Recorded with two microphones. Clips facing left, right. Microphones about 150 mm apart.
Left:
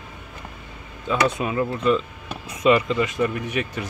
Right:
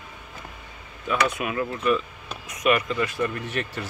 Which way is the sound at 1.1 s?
25° left (ahead or behind).